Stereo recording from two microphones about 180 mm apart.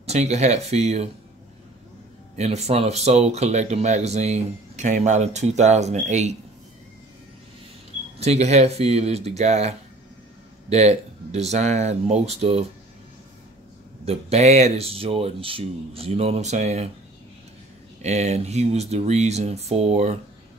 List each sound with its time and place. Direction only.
0.0 s speech: 40° right (ahead or behind)
2.3 s speech: 40° right (ahead or behind)
8.2 s speech: 35° right (ahead or behind)
14.0 s speech: 35° right (ahead or behind)
18.0 s speech: 40° right (ahead or behind)